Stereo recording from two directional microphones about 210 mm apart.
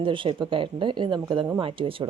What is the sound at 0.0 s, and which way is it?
Speech, 25° right (ahead or behind).